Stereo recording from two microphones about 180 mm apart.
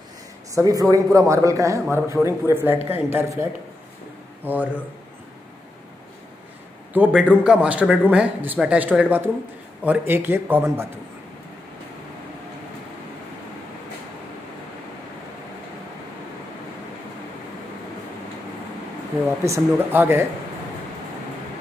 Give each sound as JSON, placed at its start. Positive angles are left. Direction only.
{"t": 0.6, "sound": "a man's voice", "side_deg": -20}
{"t": 4.5, "sound": "a man's voice", "side_deg": -10}
{"t": 6.9, "sound": "a man's voice", "side_deg": -10}
{"t": 19.4, "sound": "a man's voice", "side_deg": -15}